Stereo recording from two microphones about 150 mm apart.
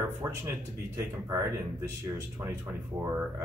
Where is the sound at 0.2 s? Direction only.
20° right (ahead or behind).